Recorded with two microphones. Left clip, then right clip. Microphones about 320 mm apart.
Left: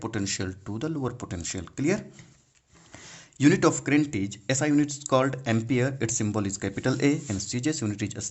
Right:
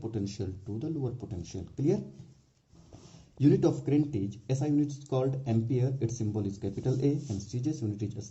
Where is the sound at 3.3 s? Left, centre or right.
Left.